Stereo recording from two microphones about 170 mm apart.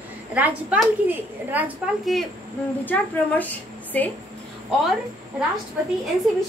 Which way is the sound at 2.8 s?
10° left (ahead or behind).